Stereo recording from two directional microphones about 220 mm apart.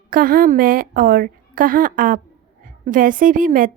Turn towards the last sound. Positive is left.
turn(degrees=-40)  # may be behind; listen again after turning